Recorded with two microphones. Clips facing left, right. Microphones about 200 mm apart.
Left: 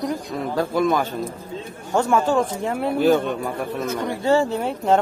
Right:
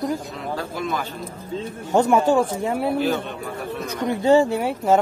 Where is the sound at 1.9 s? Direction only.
15° right (ahead or behind).